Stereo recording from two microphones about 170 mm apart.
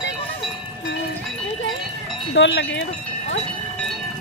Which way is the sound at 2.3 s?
90° left.